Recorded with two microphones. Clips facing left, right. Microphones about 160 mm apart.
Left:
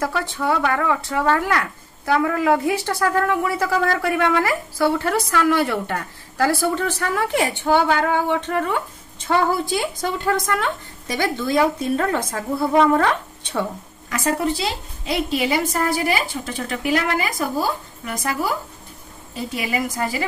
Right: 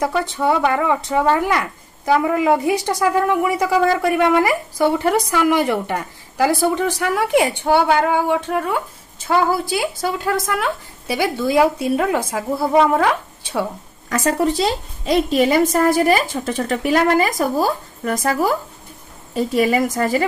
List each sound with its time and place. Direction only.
0.0 s speech: 20° right (ahead or behind)
14.0 s a woman's voice: 40° right (ahead or behind)